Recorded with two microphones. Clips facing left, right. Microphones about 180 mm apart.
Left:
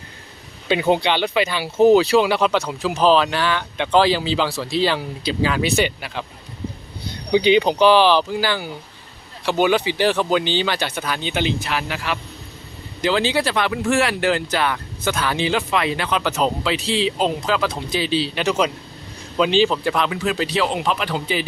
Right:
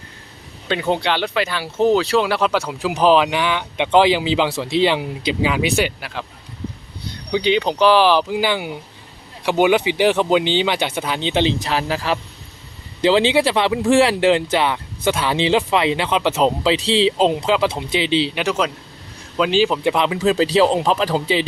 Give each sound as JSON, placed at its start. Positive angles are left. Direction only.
{"t": 0.7, "sound": "speech", "side_deg": 10}
{"t": 7.4, "sound": "speech", "side_deg": 5}
{"t": 13.1, "sound": "speech", "side_deg": -25}
{"t": 18.3, "sound": "speech", "side_deg": -5}
{"t": 19.8, "sound": "speech", "side_deg": -20}